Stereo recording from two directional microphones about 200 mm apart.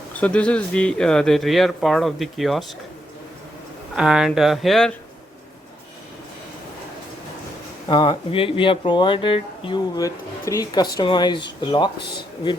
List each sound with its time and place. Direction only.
0.2 s speech: 5° left (ahead or behind)
3.9 s speech: 5° right (ahead or behind)
7.9 s speech: 25° left (ahead or behind)